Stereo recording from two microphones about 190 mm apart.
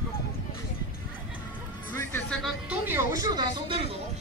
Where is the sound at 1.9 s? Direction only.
10° left (ahead or behind).